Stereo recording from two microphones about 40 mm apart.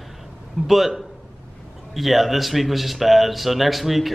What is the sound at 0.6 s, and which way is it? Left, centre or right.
A man's voice, centre.